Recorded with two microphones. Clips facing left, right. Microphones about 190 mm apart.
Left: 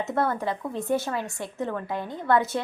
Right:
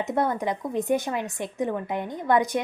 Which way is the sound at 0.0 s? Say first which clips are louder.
Right 1 dB; 15° right (ahead or behind).